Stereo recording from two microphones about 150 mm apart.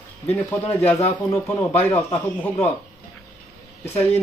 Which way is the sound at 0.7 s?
20° left (ahead or behind).